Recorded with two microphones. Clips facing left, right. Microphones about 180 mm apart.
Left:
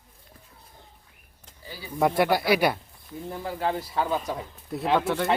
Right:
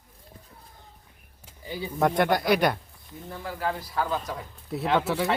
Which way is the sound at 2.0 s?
5° left (ahead or behind).